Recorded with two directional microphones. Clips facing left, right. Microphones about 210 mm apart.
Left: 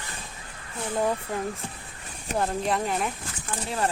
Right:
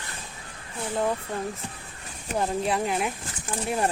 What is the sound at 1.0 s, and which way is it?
Speech, 5° left (ahead or behind).